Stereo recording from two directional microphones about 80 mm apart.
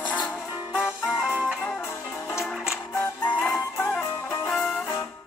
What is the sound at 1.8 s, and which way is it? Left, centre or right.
Music, left.